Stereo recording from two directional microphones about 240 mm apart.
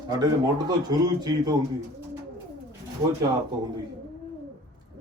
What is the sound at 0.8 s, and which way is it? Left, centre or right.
Speech, centre.